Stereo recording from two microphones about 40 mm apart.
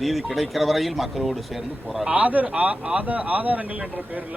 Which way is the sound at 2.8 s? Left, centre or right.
Right.